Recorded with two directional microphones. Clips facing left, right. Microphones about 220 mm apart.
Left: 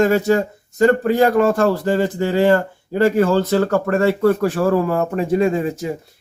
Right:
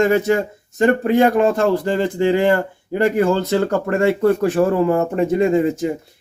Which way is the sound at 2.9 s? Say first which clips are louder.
Left 1 dB; 20° right (ahead or behind).